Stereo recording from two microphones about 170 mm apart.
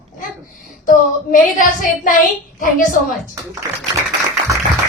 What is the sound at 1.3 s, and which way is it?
Speech, 50° left (ahead or behind).